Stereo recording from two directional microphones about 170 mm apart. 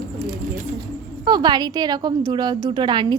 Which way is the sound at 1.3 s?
25° right (ahead or behind).